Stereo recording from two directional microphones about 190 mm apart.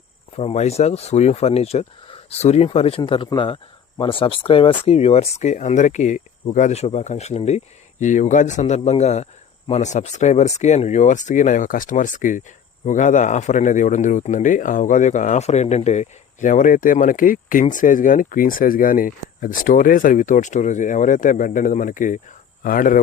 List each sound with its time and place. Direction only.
0.3 s speech: 35° left (ahead or behind)